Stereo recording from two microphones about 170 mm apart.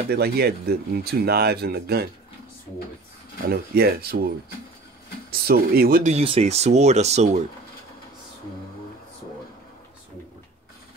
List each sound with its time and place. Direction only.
0.1 s speech: 65° right (ahead or behind)
3.4 s speech: 60° right (ahead or behind)
5.3 s speech: 60° right (ahead or behind)
6.0 s speech: 35° right (ahead or behind)